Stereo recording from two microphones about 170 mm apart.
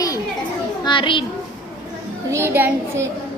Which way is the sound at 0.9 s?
30° left (ahead or behind).